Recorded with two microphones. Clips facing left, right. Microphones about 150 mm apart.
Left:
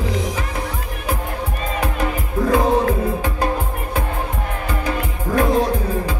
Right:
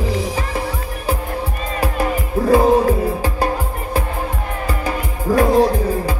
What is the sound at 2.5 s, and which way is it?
Music, 35° right (ahead or behind).